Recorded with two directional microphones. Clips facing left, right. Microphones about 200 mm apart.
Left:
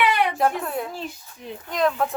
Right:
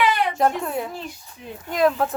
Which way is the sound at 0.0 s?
65° left (ahead or behind).